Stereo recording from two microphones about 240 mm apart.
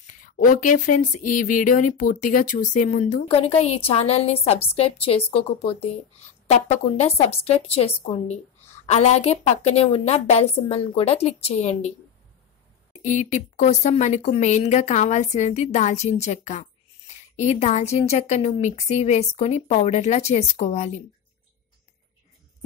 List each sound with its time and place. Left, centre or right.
0.0 s speech: left
13.0 s speech: left